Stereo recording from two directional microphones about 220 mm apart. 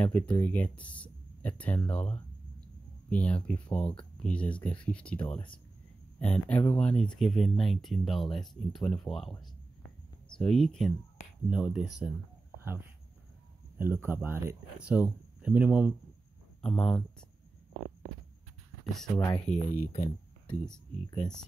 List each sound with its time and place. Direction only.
0.0 s speech: 5° left (ahead or behind)
5.3 s speech: 20° left (ahead or behind)
6.1 s speech: 5° left (ahead or behind)
10.4 s speech: 5° left (ahead or behind)
13.7 s speech: 10° right (ahead or behind)
19.5 s speech: 30° left (ahead or behind)
20.4 s speech: 5° left (ahead or behind)